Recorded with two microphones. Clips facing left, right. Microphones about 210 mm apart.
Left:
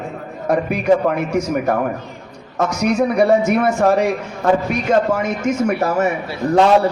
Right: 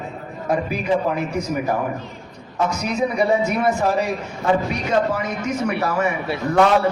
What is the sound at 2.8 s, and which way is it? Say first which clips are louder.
A man's voice: left 8 dB; 50° left (ahead or behind).